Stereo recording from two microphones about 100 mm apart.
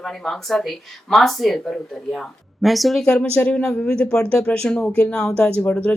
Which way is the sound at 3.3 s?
15° left (ahead or behind).